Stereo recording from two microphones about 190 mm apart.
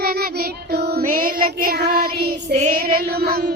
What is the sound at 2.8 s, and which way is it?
Female singing, 55° right (ahead or behind).